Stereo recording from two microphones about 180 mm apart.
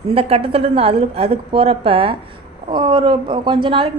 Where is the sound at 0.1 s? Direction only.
35° right (ahead or behind).